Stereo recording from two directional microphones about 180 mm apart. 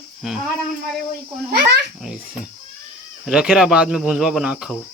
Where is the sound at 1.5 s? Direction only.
65° right (ahead or behind).